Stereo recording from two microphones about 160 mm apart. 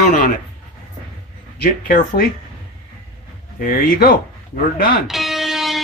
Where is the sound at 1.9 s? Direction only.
60° left (ahead or behind).